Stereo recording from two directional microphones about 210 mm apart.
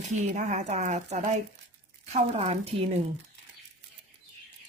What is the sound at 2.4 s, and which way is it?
Speech, 30° right (ahead or behind).